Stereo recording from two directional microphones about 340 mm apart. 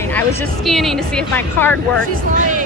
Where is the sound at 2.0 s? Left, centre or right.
Right.